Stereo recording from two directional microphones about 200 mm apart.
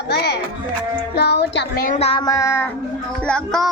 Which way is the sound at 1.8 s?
35° left (ahead or behind).